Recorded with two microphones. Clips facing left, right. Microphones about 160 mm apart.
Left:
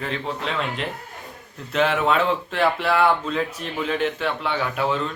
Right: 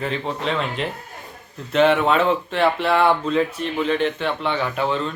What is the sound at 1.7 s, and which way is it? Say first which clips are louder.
Speech: right 4 dB; centre (ahead or behind).